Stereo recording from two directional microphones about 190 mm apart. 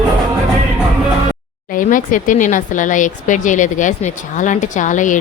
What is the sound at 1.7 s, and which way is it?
Speech, 45° left (ahead or behind).